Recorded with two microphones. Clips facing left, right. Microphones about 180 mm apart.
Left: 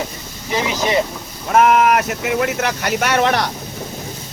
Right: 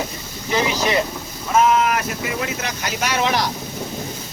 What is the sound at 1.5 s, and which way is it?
Speech, 65° left (ahead or behind).